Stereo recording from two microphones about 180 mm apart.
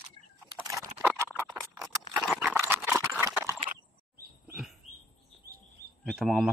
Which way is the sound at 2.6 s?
10° right (ahead or behind).